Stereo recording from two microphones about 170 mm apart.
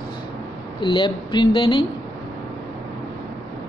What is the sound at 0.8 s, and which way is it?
Speech, 30° left (ahead or behind).